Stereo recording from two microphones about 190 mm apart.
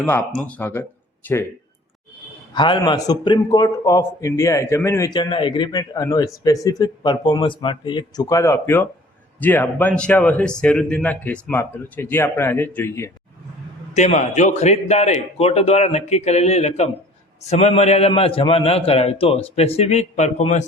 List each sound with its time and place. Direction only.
0.0 s a man's voice: 5° left (ahead or behind)
2.5 s a man's voice: 25° left (ahead or behind)
13.9 s a man's voice: 40° left (ahead or behind)